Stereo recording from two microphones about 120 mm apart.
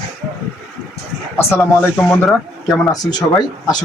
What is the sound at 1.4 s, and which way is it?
Speech, 20° left (ahead or behind).